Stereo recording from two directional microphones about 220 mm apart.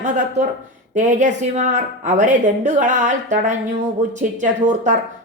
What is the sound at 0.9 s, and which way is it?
A woman's voice, 35° right (ahead or behind).